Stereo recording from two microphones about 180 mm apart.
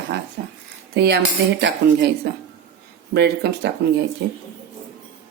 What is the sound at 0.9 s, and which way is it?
Speech, 65° right (ahead or behind).